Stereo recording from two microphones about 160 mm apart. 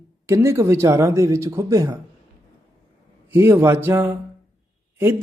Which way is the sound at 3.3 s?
15° right (ahead or behind).